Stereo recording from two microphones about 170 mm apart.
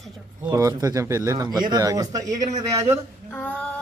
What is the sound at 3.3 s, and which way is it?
Female singing, 10° left (ahead or behind).